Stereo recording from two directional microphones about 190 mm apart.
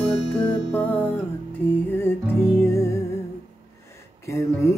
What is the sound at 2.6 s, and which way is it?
Music, 15° left (ahead or behind).